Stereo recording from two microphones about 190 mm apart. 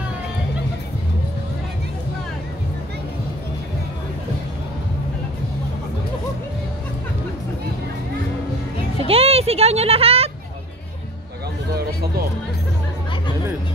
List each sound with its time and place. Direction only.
9.0 s music: 30° right (ahead or behind)